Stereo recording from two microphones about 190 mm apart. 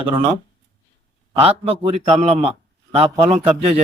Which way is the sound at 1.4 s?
30° right (ahead or behind).